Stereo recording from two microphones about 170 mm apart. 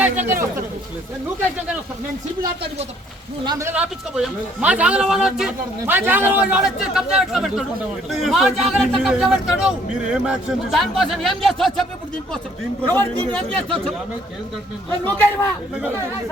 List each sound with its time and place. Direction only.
0.0 s speech: 10° right (ahead or behind)
3.4 s a man's voice: 25° right (ahead or behind)
3.7 s a man's voice: 5° right (ahead or behind)
12.9 s speech: 10° left (ahead or behind)
15.0 s speech: 15° left (ahead or behind)